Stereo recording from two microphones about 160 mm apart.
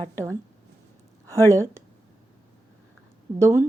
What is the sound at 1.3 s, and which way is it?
Speech, 20° right (ahead or behind).